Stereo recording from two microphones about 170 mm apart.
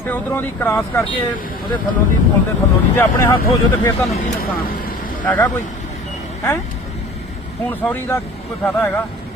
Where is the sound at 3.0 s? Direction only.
15° left (ahead or behind).